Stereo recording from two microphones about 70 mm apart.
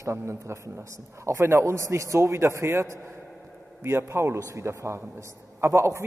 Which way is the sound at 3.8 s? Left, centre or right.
Right.